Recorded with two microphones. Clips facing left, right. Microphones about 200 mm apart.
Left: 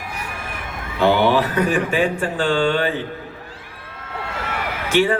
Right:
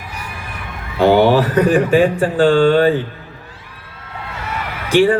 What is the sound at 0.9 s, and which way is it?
Speech, 40° right (ahead or behind).